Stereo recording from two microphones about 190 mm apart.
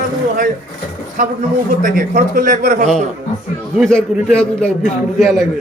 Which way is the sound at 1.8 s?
45° right (ahead or behind).